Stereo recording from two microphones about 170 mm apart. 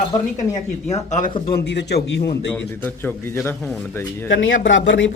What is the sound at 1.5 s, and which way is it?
Speech, 80° left.